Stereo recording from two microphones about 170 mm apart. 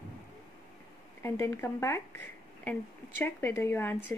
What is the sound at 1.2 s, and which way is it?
Speech, 15° left (ahead or behind).